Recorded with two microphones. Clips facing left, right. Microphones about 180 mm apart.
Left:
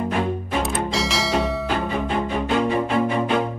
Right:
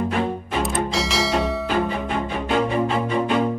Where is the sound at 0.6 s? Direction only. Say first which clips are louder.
Right 2 dB; centre (ahead or behind).